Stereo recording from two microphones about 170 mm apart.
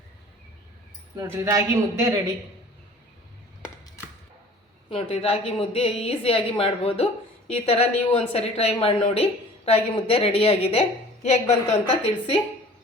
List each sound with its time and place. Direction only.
1.1 s a man's voice: 20° right (ahead or behind)
4.9 s a woman's voice: 35° left (ahead or behind)